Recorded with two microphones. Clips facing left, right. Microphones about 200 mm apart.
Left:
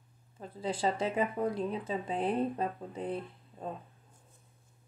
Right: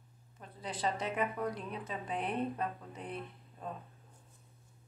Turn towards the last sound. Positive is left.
turn(degrees=30)  # may be behind; listen again after turning